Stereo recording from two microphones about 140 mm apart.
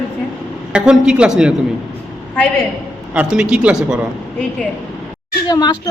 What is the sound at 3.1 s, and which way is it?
Speech, 10° right (ahead or behind).